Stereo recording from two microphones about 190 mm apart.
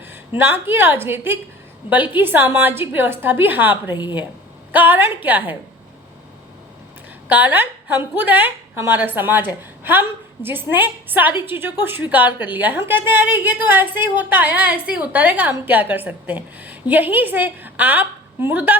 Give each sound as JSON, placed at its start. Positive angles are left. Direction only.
{"t": 0.1, "sound": "a woman's voice", "side_deg": -10}
{"t": 3.9, "sound": "speech", "side_deg": 25}
{"t": 4.7, "sound": "a woman's voice", "side_deg": -10}
{"t": 7.3, "sound": "a woman's voice", "side_deg": -10}